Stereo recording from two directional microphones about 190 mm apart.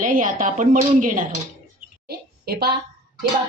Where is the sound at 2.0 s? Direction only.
55° right (ahead or behind).